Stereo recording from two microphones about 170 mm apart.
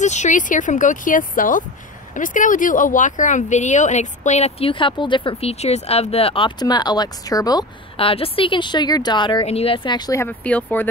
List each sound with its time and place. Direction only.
0.0 s speech: 45° left (ahead or behind); by 10.9 s 10° left (ahead or behind)